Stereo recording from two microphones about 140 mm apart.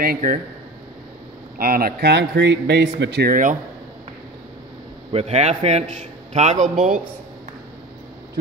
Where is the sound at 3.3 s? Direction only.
65° right (ahead or behind).